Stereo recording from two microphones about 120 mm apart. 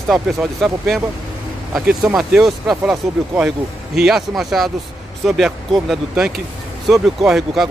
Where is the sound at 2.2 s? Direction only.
Centre (ahead or behind).